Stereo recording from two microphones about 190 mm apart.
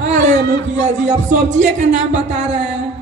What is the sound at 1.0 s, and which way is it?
A man's voice, 40° right (ahead or behind).